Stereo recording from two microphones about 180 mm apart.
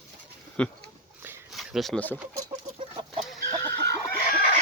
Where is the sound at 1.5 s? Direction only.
Centre (ahead or behind).